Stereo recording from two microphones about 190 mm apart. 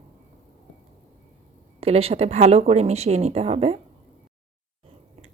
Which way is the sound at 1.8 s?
30° right (ahead or behind).